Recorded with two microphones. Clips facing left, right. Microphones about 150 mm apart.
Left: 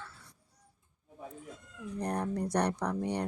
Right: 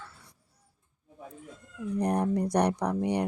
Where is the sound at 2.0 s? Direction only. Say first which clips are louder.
Right 6 dB; 10° right (ahead or behind).